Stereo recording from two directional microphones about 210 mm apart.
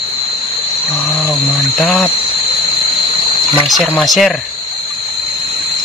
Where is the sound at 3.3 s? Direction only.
20° left (ahead or behind).